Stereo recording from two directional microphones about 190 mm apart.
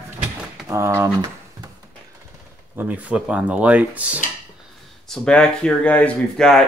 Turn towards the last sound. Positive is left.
turn(degrees=5)  # may be behind; listen again after turning